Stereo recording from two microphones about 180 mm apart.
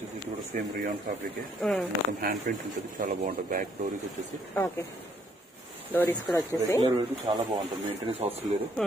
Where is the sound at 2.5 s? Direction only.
55° right (ahead or behind).